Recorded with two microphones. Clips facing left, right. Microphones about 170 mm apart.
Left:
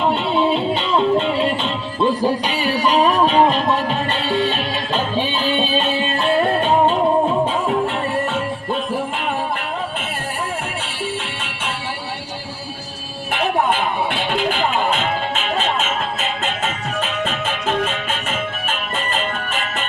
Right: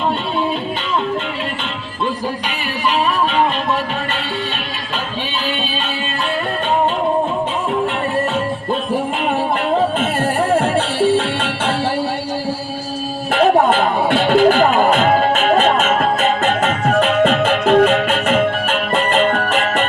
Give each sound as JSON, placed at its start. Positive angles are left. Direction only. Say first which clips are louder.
{"t": 13.4, "sound": "music", "louder": "right 6 dB", "side_deg": -45}
{"t": 14.1, "sound": "music", "louder": "right 9 dB", "side_deg": -60}
{"t": 14.9, "sound": "music", "louder": "right 8 dB", "side_deg": -40}
{"t": 15.6, "sound": "music", "louder": "right 7 dB", "side_deg": -60}